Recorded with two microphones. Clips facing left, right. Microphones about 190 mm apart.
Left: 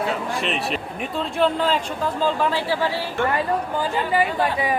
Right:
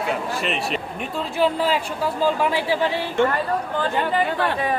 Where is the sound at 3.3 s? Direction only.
10° left (ahead or behind).